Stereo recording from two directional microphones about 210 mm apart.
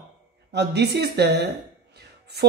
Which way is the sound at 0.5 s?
55° right (ahead or behind).